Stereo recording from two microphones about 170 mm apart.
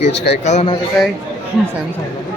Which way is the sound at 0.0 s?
90° left.